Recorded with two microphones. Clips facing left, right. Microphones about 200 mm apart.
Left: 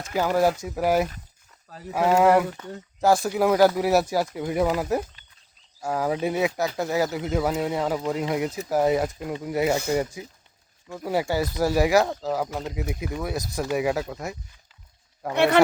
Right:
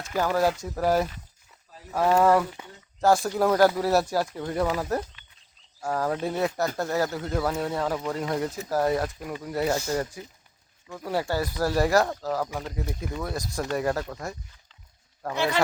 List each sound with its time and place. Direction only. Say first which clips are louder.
0.1 s speech: left 2 dB; 10° left (ahead or behind)
15.4 s a man's voice: left 7 dB; 60° left (ahead or behind)